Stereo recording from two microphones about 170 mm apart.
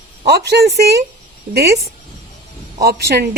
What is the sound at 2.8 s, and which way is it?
Speech, 70° right (ahead or behind).